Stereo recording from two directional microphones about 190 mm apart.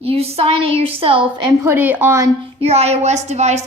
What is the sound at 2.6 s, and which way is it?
A woman's voice, 35° right (ahead or behind).